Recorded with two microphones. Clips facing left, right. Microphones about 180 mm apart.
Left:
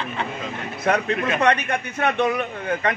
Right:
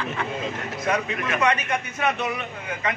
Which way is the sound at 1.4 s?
60° left (ahead or behind).